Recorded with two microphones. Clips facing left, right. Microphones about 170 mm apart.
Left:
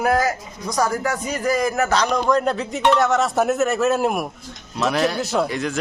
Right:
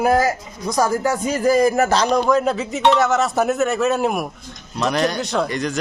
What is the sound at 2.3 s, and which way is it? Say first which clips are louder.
A man's voice: right 2 dB; 5° right (ahead or behind).